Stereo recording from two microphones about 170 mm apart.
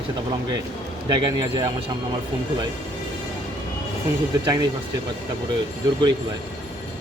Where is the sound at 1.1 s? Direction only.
25° right (ahead or behind).